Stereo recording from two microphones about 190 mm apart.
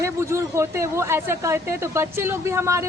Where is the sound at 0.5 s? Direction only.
15° right (ahead or behind).